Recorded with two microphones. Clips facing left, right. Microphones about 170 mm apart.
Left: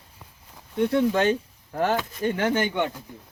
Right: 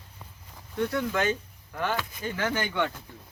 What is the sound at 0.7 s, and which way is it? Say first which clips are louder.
Speech: left 6 dB; 25° left (ahead or behind).